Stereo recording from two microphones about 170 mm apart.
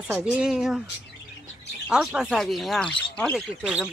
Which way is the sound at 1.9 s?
5° right (ahead or behind).